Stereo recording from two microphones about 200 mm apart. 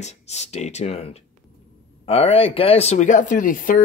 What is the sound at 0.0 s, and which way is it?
Speech, 35° left (ahead or behind).